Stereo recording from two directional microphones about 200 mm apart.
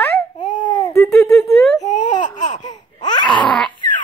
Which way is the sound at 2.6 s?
20° left (ahead or behind).